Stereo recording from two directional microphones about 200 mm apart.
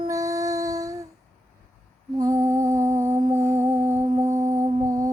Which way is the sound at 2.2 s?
15° right (ahead or behind).